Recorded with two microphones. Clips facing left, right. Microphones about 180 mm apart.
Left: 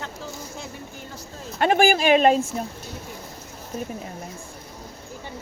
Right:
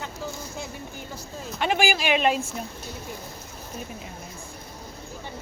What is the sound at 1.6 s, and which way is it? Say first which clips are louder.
Speech: left 6 dB; 50° left (ahead or behind).